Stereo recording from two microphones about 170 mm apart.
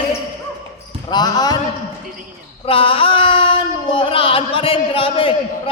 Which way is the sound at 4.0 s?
30° left (ahead or behind).